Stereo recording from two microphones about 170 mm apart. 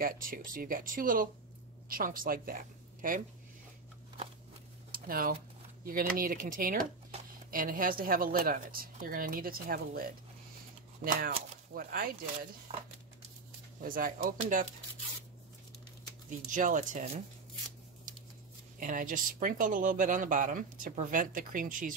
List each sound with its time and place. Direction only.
0.0 s a woman's voice: 55° right (ahead or behind)
4.9 s a woman's voice: 60° right (ahead or behind)
11.2 s speech: 60° right (ahead or behind)
12.7 s a sound: 30° right (ahead or behind)
13.8 s a woman's voice: 55° right (ahead or behind)
16.3 s speech: 50° right (ahead or behind)
18.8 s speech: 50° right (ahead or behind)